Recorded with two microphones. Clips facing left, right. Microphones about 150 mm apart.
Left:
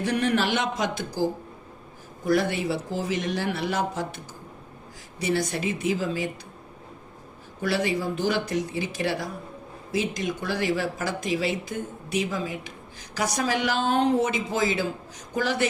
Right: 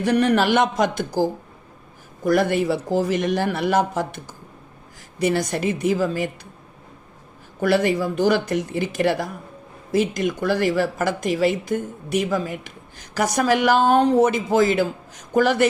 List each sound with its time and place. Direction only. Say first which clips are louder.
0.3 s speech: right 6 dB; 50° right (ahead or behind)
2.2 s speech: right 5 dB; 50° right (ahead or behind)
5.2 s speech: right 5 dB; 45° right (ahead or behind)
7.6 s a woman's voice: right 6 dB; 50° right (ahead or behind)